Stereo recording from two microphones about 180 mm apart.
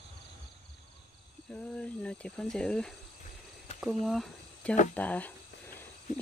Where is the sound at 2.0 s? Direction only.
5° left (ahead or behind).